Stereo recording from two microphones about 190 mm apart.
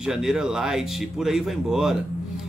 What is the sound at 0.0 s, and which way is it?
Speech, 5° right (ahead or behind).